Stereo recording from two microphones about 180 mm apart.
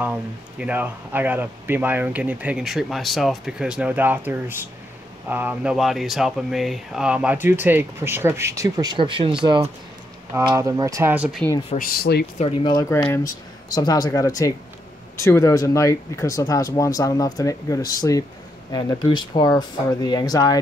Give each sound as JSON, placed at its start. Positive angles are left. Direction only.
{"t": 0.0, "sound": "speech", "side_deg": -10}
{"t": 10.3, "sound": "speech", "side_deg": -15}
{"t": 11.7, "sound": "speech", "side_deg": 55}
{"t": 12.4, "sound": "speech", "side_deg": 30}